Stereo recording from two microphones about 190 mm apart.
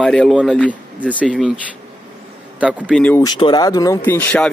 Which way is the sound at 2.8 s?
5° left (ahead or behind).